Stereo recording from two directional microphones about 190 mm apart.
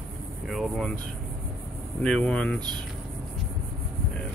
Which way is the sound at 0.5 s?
Centre (ahead or behind).